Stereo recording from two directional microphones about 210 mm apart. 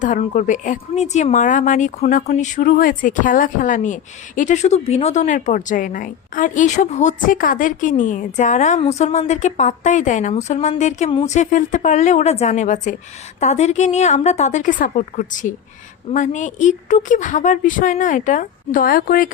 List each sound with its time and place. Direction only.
0.0 s speech: 35° left (ahead or behind)